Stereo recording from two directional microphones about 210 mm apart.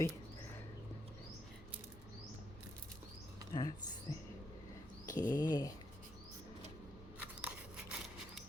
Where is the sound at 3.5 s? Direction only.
20° left (ahead or behind).